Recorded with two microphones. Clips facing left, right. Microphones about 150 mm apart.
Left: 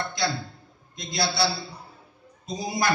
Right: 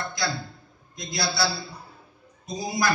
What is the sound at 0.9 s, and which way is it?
A man's voice, 25° left (ahead or behind).